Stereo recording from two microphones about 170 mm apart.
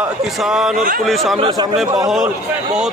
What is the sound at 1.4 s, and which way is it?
Speech, 25° right (ahead or behind).